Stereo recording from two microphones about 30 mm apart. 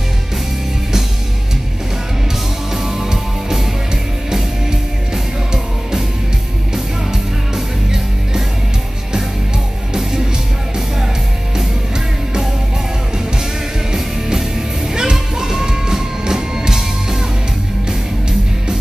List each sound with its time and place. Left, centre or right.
2.7 s music: centre
4.3 s music: centre
15.0 s music: right